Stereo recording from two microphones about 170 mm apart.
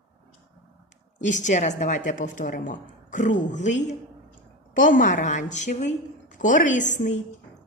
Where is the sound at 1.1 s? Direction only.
45° left (ahead or behind).